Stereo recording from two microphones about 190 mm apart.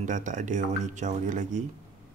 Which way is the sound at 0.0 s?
40° right (ahead or behind).